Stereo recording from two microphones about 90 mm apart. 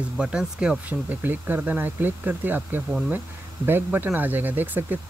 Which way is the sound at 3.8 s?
20° right (ahead or behind).